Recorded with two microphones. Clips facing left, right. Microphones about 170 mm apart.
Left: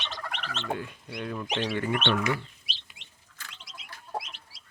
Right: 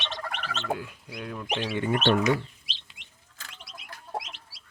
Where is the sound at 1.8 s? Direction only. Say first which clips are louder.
Right 7 dB; 35° right (ahead or behind).